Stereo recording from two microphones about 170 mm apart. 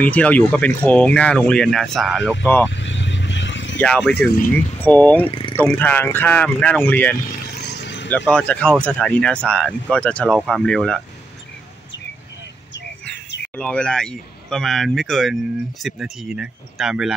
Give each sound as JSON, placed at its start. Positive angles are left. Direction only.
{"t": 0.0, "sound": "speech", "side_deg": 10}
{"t": 2.7, "sound": "vehicle", "side_deg": 90}
{"t": 3.8, "sound": "speech", "side_deg": 5}
{"t": 4.3, "sound": "speech", "side_deg": 55}
{"t": 4.7, "sound": "speech", "side_deg": 10}
{"t": 7.6, "sound": "a sound", "side_deg": 90}
{"t": 8.3, "sound": "speech", "side_deg": 5}
{"t": 13.6, "sound": "speech", "side_deg": 5}